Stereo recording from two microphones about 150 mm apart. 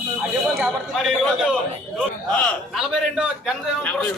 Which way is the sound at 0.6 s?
5° right (ahead or behind).